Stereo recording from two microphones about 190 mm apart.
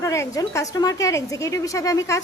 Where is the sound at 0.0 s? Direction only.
15° left (ahead or behind).